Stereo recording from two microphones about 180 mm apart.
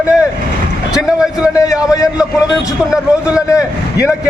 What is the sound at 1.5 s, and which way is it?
Speech, 20° left (ahead or behind).